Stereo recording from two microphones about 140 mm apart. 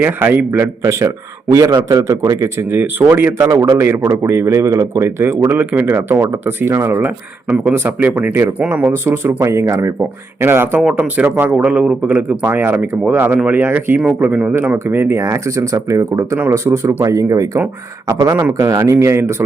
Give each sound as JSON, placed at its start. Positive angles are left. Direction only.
{"t": 0.0, "sound": "a man's voice", "side_deg": -15}